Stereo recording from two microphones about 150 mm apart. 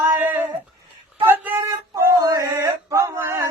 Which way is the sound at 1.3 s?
15° right (ahead or behind).